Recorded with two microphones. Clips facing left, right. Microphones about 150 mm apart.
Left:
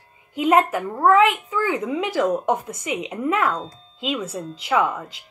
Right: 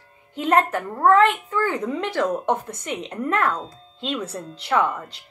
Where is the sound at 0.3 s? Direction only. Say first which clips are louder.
Left 2 dB; 5° left (ahead or behind).